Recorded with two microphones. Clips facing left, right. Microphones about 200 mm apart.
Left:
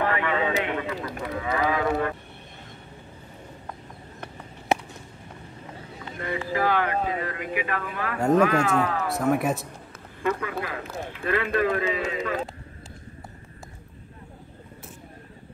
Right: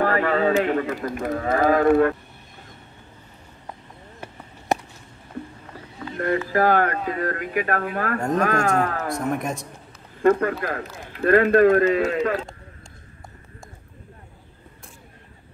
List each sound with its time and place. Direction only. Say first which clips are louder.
0.0 s a sound: right 5 dB; 40° right (ahead or behind)
0.7 s speech: right 6 dB; 45° right (ahead or behind)
6.1 s speech: right 6 dB; 55° right (ahead or behind)
9.1 s speech: left 2 dB; 5° left (ahead or behind)
10.6 s speech: right 3 dB; 45° right (ahead or behind)